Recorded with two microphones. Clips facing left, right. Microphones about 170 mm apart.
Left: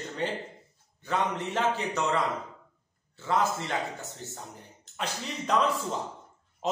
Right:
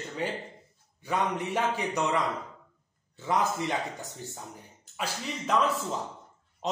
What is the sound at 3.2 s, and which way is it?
Speech, 15° right (ahead or behind).